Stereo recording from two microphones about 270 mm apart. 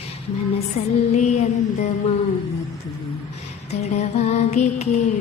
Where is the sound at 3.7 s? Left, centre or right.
Left.